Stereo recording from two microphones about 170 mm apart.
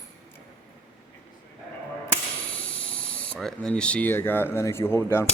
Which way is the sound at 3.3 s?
5° left (ahead or behind).